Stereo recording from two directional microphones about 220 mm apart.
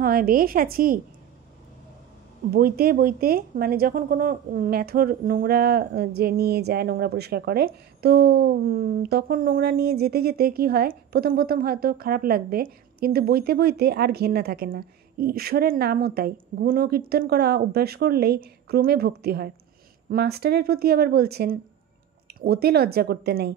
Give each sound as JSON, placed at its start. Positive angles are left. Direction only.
{"t": 0.0, "sound": "a woman's voice", "side_deg": -40}
{"t": 2.5, "sound": "speech", "side_deg": -45}